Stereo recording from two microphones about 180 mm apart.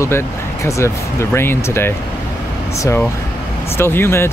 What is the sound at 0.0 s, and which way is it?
Speech, 15° left (ahead or behind).